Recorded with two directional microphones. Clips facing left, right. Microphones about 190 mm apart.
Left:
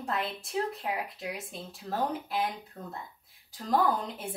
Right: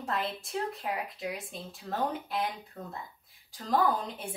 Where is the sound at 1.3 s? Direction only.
Centre (ahead or behind).